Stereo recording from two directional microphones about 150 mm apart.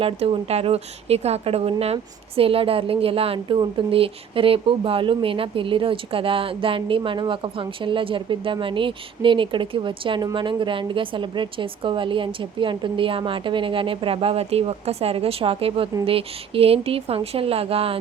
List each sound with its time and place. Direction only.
0.0 s a woman's voice: 40° right (ahead or behind)